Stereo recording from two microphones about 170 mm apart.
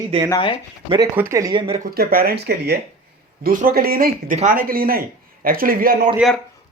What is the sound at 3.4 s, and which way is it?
A man's voice, 55° right (ahead or behind).